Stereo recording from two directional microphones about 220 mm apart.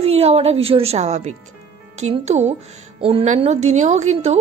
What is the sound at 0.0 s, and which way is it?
A woman's voice, 25° right (ahead or behind).